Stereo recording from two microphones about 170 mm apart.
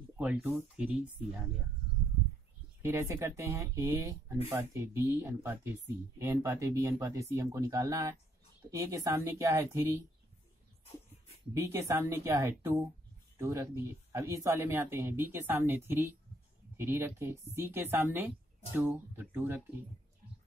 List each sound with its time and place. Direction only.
0.2 s speech: 10° right (ahead or behind)
2.8 s speech: 15° right (ahead or behind)
11.5 s speech: 15° right (ahead or behind)